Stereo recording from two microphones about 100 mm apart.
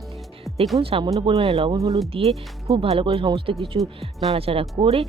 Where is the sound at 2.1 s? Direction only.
80° right.